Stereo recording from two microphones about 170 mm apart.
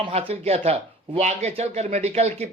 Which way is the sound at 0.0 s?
35° right (ahead or behind).